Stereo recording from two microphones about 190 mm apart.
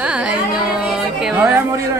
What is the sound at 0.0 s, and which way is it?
Carnatic music, 5° right (ahead or behind).